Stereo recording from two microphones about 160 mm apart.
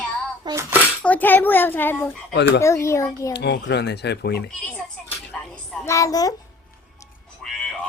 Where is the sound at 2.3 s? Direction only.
90° left.